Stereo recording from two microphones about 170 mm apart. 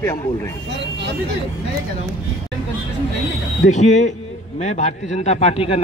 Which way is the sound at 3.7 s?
45° left (ahead or behind).